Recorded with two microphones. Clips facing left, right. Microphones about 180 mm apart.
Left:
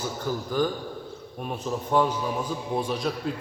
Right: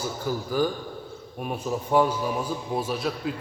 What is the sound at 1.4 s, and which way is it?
A man's voice, 10° right (ahead or behind).